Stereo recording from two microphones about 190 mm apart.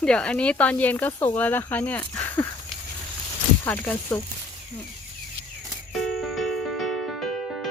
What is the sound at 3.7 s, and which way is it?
Speech, 10° left (ahead or behind).